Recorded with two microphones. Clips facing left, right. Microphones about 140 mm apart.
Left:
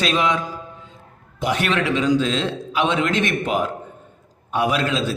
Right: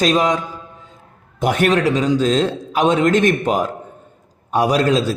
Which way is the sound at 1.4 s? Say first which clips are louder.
Right 6 dB; 50° right (ahead or behind).